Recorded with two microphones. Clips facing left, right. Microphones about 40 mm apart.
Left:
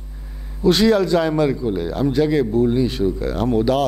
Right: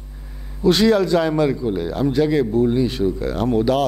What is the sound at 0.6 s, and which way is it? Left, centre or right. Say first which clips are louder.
A man's voice: even; right.